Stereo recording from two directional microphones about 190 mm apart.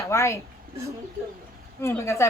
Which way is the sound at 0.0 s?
15° left (ahead or behind).